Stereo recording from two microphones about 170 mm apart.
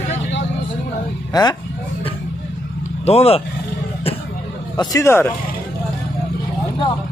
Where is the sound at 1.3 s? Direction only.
25° left (ahead or behind).